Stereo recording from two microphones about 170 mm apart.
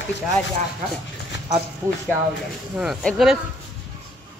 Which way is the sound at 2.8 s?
Centre (ahead or behind).